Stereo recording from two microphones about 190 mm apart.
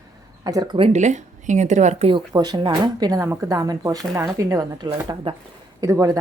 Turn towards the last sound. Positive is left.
turn(degrees=-15)  # may be behind; listen again after turning